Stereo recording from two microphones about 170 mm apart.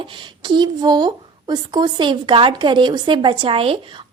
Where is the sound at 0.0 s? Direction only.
30° right (ahead or behind).